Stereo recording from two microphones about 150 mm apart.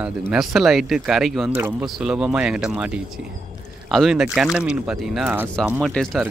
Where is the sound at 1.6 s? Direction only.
15° right (ahead or behind).